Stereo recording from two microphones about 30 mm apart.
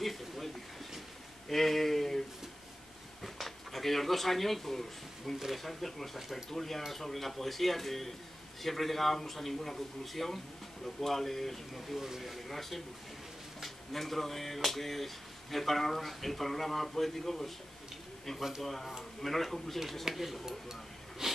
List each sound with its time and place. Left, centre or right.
0.0 s a sound: centre
1.5 s speech: centre
13.9 s speech: centre
18.6 s speech: centre
20.2 s speech: centre
21.2 s a sound: centre